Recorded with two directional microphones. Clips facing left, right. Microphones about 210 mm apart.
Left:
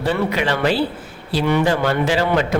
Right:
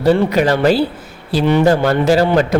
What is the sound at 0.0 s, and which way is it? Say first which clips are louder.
A man's voice: right 7 dB; 40° right (ahead or behind).